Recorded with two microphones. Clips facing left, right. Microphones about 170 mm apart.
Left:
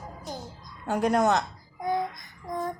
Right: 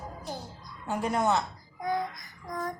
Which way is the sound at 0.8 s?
75° left (ahead or behind).